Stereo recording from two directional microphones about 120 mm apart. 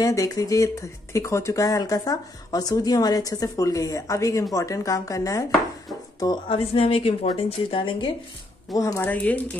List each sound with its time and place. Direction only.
0.0 s speech: 30° left (ahead or behind)
6.5 s speech: 50° left (ahead or behind)
8.7 s speech: 25° left (ahead or behind)
9.1 s speech: 10° left (ahead or behind)